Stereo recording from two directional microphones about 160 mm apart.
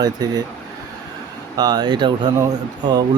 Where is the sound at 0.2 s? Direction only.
25° right (ahead or behind).